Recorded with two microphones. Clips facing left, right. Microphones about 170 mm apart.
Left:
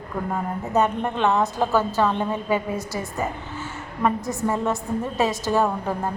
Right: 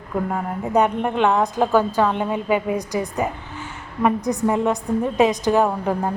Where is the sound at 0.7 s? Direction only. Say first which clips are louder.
Right 3 dB; 15° right (ahead or behind).